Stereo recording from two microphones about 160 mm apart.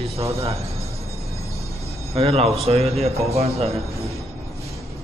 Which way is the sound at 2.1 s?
40° right (ahead or behind).